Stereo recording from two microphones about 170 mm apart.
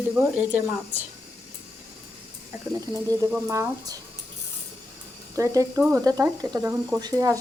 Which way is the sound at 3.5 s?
20° right (ahead or behind).